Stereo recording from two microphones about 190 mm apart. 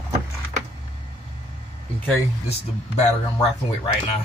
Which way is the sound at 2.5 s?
35° left (ahead or behind).